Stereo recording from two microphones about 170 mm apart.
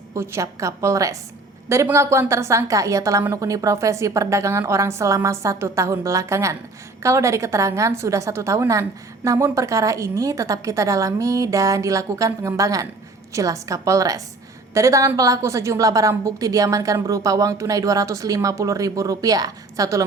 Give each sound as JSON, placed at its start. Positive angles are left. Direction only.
{"t": 0.1, "sound": "a woman's voice", "side_deg": -15}